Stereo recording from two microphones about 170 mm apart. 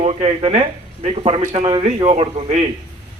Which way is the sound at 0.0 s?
35° right (ahead or behind).